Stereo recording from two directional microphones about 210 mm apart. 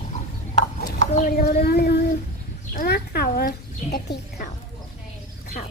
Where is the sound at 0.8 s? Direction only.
40° left (ahead or behind).